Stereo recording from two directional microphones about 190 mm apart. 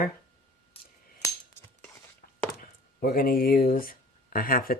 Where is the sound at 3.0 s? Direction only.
50° left (ahead or behind).